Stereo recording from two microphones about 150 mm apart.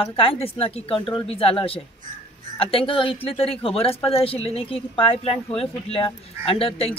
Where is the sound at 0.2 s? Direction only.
40° left (ahead or behind).